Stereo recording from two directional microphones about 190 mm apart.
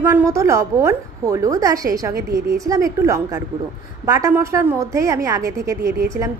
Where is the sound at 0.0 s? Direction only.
15° right (ahead or behind).